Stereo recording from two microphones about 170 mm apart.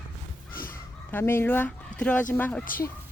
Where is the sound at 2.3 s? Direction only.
10° left (ahead or behind).